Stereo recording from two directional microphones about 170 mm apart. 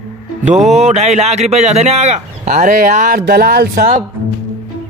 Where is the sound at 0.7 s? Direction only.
45° right (ahead or behind); by 3.8 s 65° right (ahead or behind).